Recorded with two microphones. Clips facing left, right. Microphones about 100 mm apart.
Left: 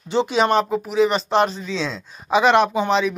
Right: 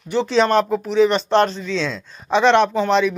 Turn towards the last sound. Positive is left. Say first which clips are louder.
# right 2 dB
turn(degrees=5)  # may be behind; listen again after turning